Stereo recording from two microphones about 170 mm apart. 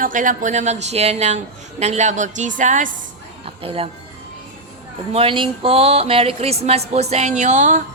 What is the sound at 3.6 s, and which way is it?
Speech, 35° right (ahead or behind).